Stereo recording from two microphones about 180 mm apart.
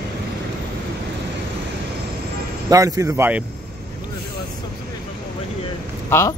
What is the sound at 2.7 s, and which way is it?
Speech, 20° right (ahead or behind).